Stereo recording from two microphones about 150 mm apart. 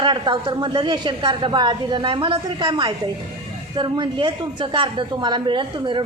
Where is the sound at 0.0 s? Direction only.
30° right (ahead or behind).